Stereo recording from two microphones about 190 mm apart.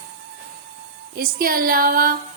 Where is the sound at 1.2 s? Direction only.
50° right (ahead or behind).